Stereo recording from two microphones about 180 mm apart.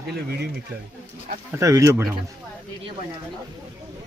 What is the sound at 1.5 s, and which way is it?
Speech, 15° right (ahead or behind).